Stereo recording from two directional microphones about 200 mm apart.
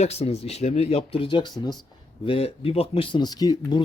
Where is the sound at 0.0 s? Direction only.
30° left (ahead or behind).